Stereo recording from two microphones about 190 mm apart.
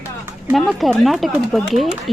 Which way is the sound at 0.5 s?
Centre (ahead or behind).